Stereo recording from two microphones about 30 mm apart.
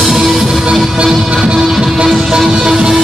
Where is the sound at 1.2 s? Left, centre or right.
Right.